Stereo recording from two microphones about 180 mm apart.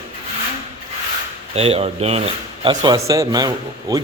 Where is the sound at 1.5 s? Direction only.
35° right (ahead or behind).